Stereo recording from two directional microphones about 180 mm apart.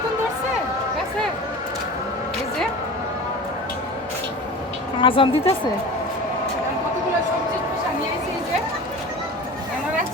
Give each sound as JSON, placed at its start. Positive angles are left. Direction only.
{"t": 4.9, "sound": "speech", "side_deg": 30}